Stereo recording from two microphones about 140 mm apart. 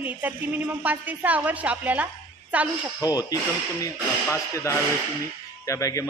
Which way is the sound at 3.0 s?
25° left (ahead or behind).